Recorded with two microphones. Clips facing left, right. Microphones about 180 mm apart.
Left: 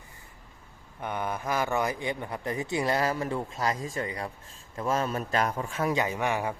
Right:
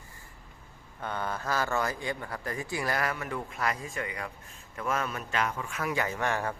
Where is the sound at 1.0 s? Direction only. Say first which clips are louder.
Left 2 dB; 15° left (ahead or behind).